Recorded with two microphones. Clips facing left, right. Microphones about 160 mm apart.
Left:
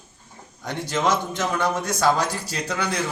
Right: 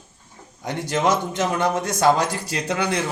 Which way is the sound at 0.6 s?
15° right (ahead or behind).